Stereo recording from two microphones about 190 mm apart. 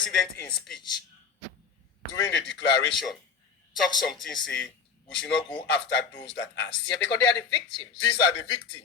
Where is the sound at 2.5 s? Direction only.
70° left (ahead or behind).